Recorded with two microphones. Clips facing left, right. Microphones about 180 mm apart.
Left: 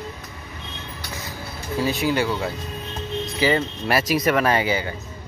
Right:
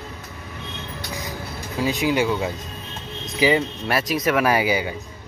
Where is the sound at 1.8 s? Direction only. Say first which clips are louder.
Right 2 dB; 15° right (ahead or behind).